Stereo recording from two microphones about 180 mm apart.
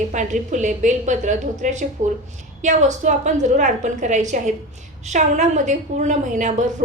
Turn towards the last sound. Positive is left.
turn(degrees=-45)  # may be behind; listen again after turning